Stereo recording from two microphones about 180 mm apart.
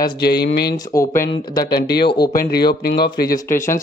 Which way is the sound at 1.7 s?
60° left (ahead or behind).